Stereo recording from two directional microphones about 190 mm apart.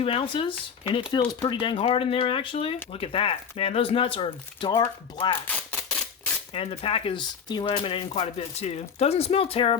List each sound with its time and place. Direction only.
0.0 s speech: 30° left (ahead or behind)
5.5 s camera: 10° left (ahead or behind)
6.5 s speech: 30° left (ahead or behind)